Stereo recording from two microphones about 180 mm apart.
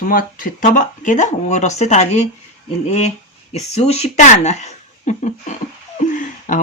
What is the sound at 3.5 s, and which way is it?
Speech, 35° left (ahead or behind).